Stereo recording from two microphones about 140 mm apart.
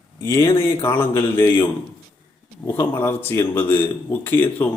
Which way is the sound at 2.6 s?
15° left (ahead or behind).